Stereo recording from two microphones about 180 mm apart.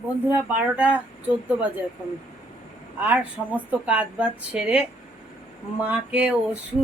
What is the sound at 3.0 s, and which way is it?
Speech, 10° right (ahead or behind).